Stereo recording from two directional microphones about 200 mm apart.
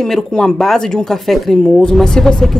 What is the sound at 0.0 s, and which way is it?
Speech, 5° left (ahead or behind).